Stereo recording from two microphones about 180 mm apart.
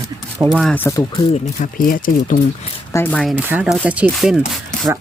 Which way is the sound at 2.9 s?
10° left (ahead or behind).